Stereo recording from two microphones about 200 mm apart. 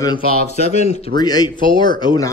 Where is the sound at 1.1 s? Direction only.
20° left (ahead or behind).